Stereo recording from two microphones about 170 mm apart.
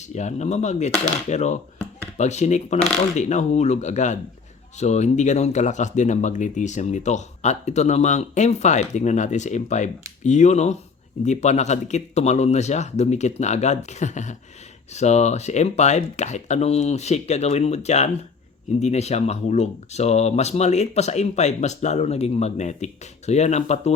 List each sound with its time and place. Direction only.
0.0 s speech: 45° left (ahead or behind)